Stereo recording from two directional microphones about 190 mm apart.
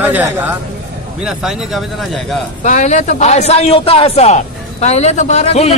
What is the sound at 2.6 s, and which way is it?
A man's voice, 40° left (ahead or behind).